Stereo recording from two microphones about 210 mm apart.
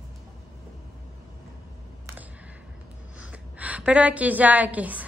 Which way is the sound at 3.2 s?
5° right (ahead or behind).